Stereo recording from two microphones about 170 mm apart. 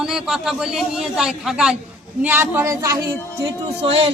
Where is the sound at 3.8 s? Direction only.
35° right (ahead or behind).